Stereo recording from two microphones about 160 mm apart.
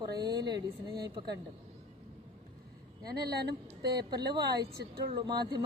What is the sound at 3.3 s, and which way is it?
Speech, 90° right.